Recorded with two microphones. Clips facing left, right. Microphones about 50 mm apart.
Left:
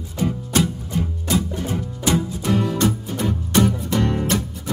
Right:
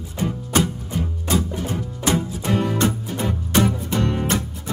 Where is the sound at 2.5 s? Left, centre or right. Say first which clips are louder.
Left 1 dB; centre.